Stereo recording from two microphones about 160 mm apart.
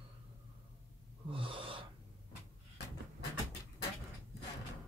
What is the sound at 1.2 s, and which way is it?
Gasp, 35° right (ahead or behind).